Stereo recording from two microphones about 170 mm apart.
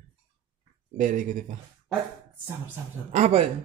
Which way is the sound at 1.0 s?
50° right (ahead or behind).